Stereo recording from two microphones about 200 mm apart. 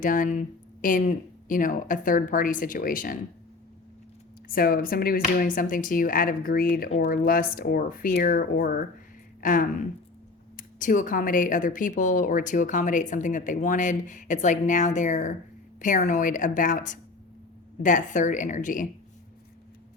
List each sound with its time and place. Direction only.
0.0 s speech: 40° left (ahead or behind)
4.4 s speech: 50° left (ahead or behind)